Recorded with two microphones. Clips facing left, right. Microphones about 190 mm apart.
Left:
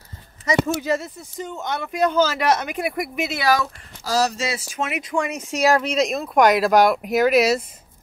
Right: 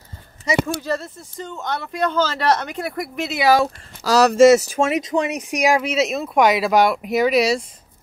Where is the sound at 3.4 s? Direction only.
30° right (ahead or behind).